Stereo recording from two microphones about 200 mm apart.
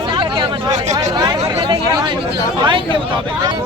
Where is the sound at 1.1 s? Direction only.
20° right (ahead or behind).